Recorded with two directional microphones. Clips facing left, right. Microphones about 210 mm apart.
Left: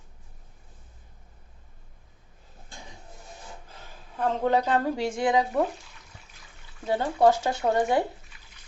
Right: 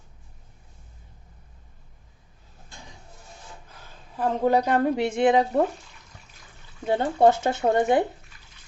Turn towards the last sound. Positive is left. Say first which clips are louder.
# right 3 dB
turn(degrees=-25)  # may be behind; listen again after turning